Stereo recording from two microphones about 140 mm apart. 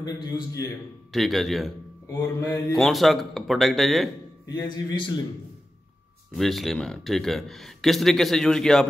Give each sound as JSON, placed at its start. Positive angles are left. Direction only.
{"t": 1.1, "sound": "speech", "side_deg": 0}
{"t": 2.0, "sound": "mantra", "side_deg": 20}
{"t": 2.7, "sound": "speech", "side_deg": 0}
{"t": 4.7, "sound": "a man's voice", "side_deg": 30}
{"t": 6.3, "sound": "speech", "side_deg": 0}